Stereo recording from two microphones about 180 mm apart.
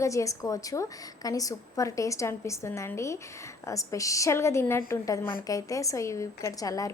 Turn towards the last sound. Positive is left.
turn(degrees=20)  # may be behind; listen again after turning